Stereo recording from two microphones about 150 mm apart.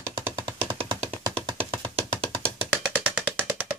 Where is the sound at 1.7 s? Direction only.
35° right (ahead or behind).